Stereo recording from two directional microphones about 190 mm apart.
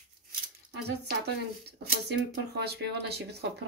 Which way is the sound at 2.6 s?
60° right (ahead or behind).